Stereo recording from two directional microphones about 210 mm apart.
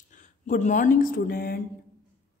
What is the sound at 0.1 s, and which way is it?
Speech, 35° left (ahead or behind).